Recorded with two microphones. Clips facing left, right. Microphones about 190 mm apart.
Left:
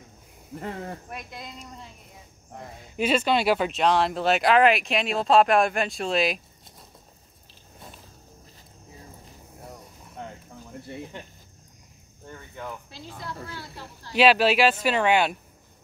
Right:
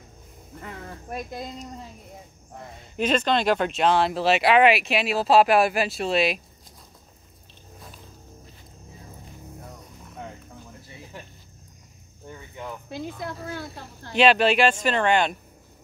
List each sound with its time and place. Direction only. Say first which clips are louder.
0.6 s speech: left 5 dB; 30° left (ahead or behind)
1.1 s speech: right 6 dB; 40° right (ahead or behind)
3.0 s speech: even; 10° left (ahead or behind)
12.3 s speech: right 1 dB; 10° right (ahead or behind)
12.9 s a woman's voice: right 6 dB; 50° right (ahead or behind)
14.1 s speech: even; 5° left (ahead or behind)